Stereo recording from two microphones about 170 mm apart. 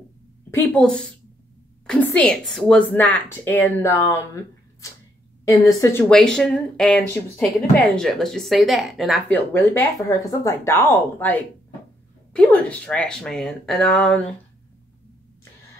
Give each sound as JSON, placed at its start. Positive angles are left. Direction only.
{"t": 0.6, "sound": "a woman's voice", "side_deg": 5}
{"t": 6.1, "sound": "speech", "side_deg": 5}
{"t": 9.3, "sound": "a woman's voice", "side_deg": 10}